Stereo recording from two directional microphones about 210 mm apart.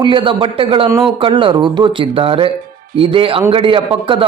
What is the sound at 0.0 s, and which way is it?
Speech, 25° right (ahead or behind).